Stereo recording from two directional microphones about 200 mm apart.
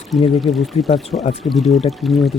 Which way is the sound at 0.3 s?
Centre (ahead or behind).